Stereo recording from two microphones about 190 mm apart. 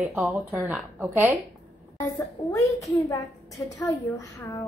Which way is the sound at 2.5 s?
15° left (ahead or behind).